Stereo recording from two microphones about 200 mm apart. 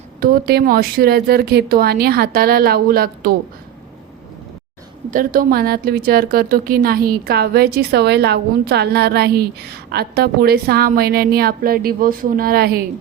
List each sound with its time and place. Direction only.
0.2 s a woman's voice: 50° right (ahead or behind)
5.1 s a woman's voice: 45° right (ahead or behind)